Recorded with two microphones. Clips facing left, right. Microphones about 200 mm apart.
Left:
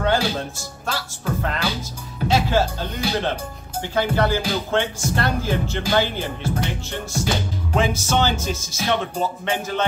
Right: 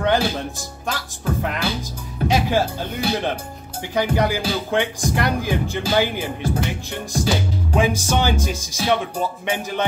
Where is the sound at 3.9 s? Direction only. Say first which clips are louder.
Even; 15° right (ahead or behind).